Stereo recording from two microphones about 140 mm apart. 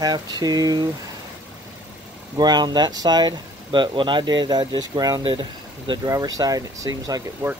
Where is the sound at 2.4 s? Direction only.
30° right (ahead or behind).